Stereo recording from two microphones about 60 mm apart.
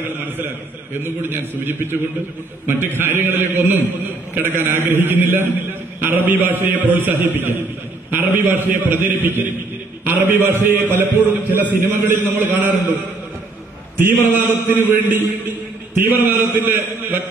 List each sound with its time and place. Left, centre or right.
1.0 s a man's voice: right
10.8 s a man's voice: right
14.2 s a man's voice: right